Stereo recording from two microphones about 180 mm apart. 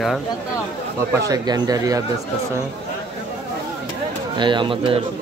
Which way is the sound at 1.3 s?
20° right (ahead or behind).